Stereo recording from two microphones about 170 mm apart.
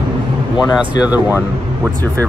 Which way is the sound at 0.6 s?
20° left (ahead or behind).